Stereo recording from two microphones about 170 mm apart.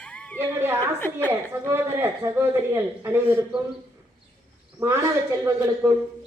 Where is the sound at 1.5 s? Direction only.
15° right (ahead or behind).